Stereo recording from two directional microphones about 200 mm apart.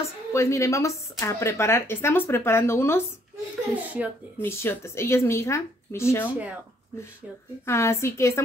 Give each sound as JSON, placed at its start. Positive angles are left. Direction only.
{"t": 0.3, "sound": "speech", "side_deg": 15}
{"t": 3.7, "sound": "speech", "side_deg": -10}
{"t": 4.4, "sound": "speech", "side_deg": 10}
{"t": 7.6, "sound": "speech", "side_deg": 15}